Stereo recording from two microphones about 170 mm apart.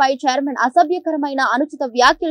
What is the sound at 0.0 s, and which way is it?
A woman's voice, centre (ahead or behind).